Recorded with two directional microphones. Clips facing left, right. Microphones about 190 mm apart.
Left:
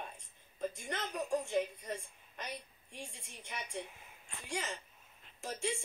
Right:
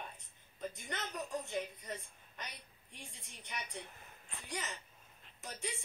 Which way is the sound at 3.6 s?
5° left (ahead or behind).